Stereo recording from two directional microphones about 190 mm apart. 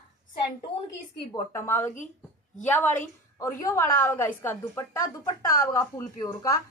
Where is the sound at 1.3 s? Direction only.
15° left (ahead or behind).